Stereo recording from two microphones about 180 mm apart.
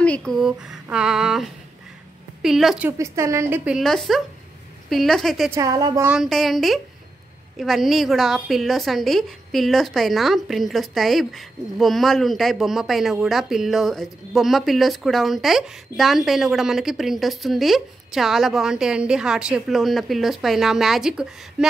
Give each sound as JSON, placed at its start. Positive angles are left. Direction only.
{"t": 0.0, "sound": "a woman's voice", "side_deg": 5}
{"t": 3.0, "sound": "a woman's voice", "side_deg": -15}
{"t": 5.5, "sound": "a woman's voice", "side_deg": -20}
{"t": 6.0, "sound": "a woman's voice", "side_deg": 0}